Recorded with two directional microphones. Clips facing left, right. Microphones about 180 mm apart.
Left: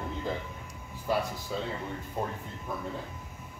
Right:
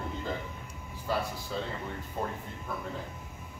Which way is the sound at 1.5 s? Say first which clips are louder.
Left 1 dB; 10° left (ahead or behind).